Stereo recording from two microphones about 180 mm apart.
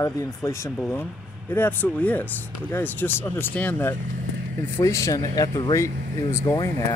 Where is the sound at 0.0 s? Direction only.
15° left (ahead or behind).